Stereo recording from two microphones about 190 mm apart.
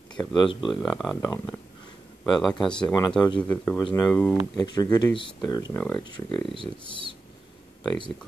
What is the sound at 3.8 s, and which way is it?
Speech, 20° left (ahead or behind).